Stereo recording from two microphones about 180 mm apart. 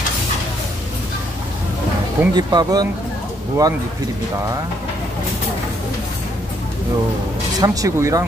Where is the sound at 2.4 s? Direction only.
20° right (ahead or behind).